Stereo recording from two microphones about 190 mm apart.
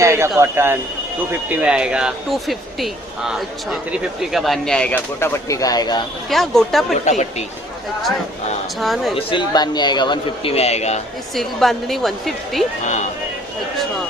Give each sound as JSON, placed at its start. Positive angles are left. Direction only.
{"t": 0.0, "sound": "speech", "side_deg": -15}
{"t": 6.3, "sound": "speech", "side_deg": 0}
{"t": 7.0, "sound": "speech", "side_deg": 35}
{"t": 8.8, "sound": "speech", "side_deg": 0}
{"t": 9.1, "sound": "a man's voice", "side_deg": 25}
{"t": 11.3, "sound": "speech", "side_deg": 0}
{"t": 12.8, "sound": "speech", "side_deg": 40}